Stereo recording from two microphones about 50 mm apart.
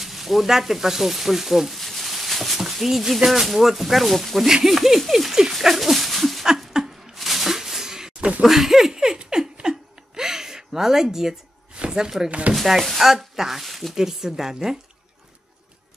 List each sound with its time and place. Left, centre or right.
0.0 s speech: centre
4.6 s dog: centre
7.2 s a sound: centre
8.4 s laughter: centre
11.7 s a sound: centre
12.3 s speech: right
12.5 s speech: centre